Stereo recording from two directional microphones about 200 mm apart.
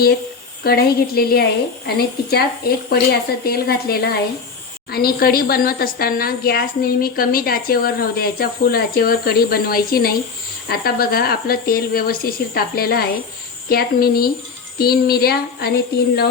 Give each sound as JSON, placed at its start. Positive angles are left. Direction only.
{"t": 0.6, "sound": "a woman's voice", "side_deg": 50}